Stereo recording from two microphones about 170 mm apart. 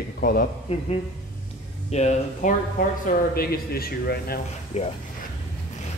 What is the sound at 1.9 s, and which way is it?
Speech, 40° left (ahead or behind).